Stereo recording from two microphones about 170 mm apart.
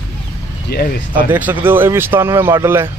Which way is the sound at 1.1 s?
10° right (ahead or behind).